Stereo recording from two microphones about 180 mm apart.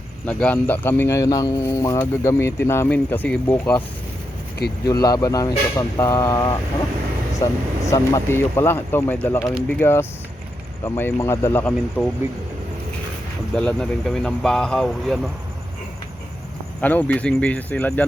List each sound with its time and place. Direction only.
0.3 s speech: 10° left (ahead or behind)
4.9 s speech: 20° left (ahead or behind)
12.0 s speech: centre (ahead or behind)
13.6 s speech: 5° left (ahead or behind)
16.8 s speech: 10° left (ahead or behind)